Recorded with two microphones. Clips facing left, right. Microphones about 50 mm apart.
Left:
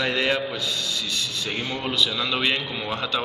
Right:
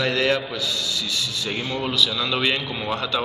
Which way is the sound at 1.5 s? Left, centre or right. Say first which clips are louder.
Right 2 dB; centre.